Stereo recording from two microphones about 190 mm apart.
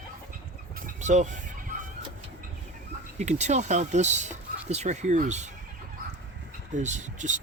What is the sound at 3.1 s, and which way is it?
Speech, 35° right (ahead or behind).